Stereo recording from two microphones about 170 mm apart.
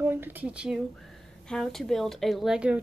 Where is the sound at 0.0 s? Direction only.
10° right (ahead or behind).